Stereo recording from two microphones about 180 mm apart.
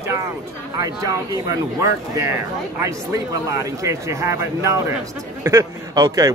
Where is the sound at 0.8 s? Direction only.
20° right (ahead or behind).